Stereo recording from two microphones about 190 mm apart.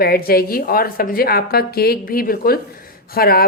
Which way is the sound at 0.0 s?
50° left (ahead or behind).